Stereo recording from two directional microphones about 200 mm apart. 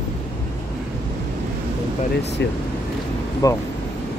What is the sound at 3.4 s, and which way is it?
Speech, 15° left (ahead or behind).